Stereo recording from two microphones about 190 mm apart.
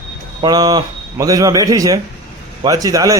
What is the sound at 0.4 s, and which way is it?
Speech, 20° right (ahead or behind).